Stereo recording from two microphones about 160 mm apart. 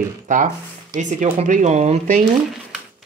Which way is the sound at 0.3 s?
50° right (ahead or behind).